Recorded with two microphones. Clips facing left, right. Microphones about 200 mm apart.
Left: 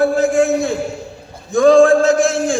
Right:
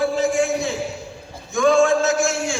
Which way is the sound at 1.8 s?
55° left (ahead or behind).